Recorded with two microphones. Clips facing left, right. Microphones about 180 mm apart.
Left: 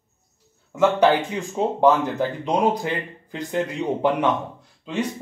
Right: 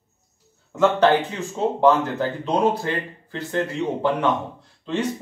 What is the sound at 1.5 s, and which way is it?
Speech, 15° left (ahead or behind).